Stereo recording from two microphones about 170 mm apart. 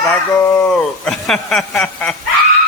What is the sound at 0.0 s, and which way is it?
Speech, 15° left (ahead or behind).